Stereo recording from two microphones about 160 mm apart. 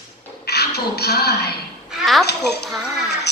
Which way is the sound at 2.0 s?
Centre (ahead or behind).